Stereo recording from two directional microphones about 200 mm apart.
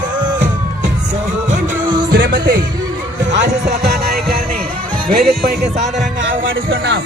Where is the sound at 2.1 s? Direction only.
50° right (ahead or behind).